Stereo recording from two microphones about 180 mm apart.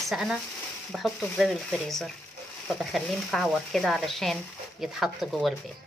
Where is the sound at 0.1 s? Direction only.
5° right (ahead or behind).